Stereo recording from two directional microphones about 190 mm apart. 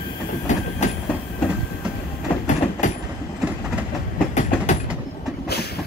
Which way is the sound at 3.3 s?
5° right (ahead or behind).